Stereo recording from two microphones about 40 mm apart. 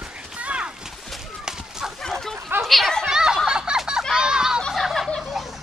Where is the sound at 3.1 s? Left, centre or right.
Centre.